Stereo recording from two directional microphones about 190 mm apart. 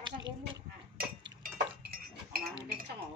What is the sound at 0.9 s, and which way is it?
Livestock, 50° right (ahead or behind).